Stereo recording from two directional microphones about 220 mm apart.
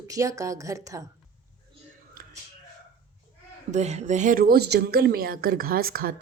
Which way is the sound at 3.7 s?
30° right (ahead or behind).